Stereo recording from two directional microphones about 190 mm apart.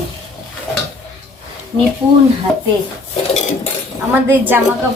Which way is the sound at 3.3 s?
35° left (ahead or behind).